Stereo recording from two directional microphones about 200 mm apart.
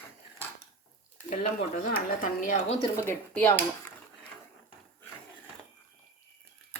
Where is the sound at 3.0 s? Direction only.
10° left (ahead or behind).